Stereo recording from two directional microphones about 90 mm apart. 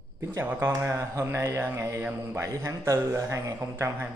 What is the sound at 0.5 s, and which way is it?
Speech, 25° right (ahead or behind).